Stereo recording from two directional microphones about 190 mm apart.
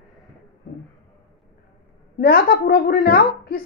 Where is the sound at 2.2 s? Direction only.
50° left (ahead or behind).